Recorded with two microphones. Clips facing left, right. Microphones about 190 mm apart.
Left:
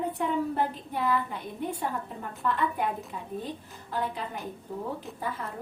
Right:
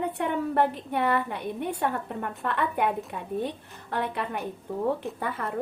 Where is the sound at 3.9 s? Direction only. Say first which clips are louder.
Right 3 dB; 70° right (ahead or behind).